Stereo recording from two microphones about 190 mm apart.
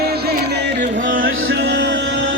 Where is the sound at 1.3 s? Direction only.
80° right.